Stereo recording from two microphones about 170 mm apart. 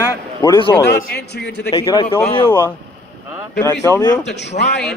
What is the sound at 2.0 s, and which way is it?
Speech, 30° left (ahead or behind).